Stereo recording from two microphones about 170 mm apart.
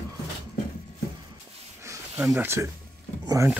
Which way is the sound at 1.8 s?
15° right (ahead or behind).